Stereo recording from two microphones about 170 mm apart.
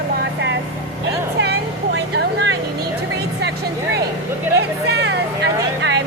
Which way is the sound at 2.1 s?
90° right.